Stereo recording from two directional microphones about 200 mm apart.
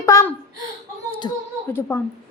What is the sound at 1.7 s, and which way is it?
Speech, 10° left (ahead or behind).